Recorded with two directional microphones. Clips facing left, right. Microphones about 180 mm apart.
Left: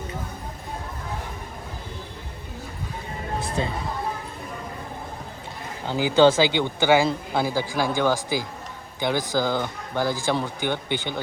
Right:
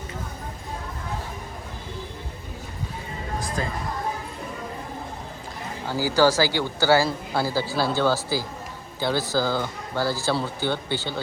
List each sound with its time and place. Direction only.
3.4 s chatter: 30° left (ahead or behind)
5.9 s speech: 20° left (ahead or behind)